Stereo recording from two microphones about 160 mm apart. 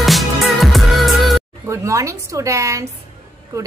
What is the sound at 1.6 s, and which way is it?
A woman's voice, 20° right (ahead or behind).